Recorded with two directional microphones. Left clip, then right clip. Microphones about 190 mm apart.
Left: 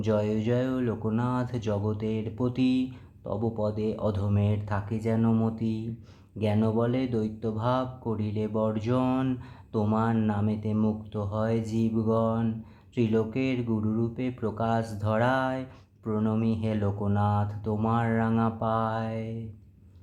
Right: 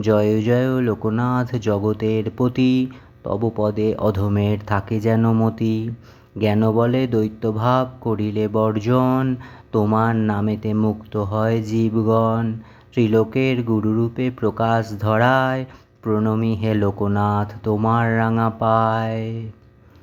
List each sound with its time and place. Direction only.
0.0 s speech: 30° right (ahead or behind)